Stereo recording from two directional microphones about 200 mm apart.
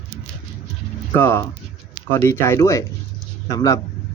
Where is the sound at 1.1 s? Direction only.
10° left (ahead or behind).